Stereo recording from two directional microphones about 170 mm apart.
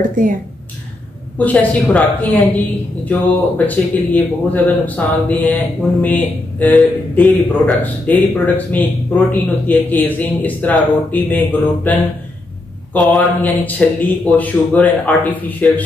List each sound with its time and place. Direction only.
0.2 s speech: 50° right (ahead or behind)
1.4 s a man's voice: 10° left (ahead or behind)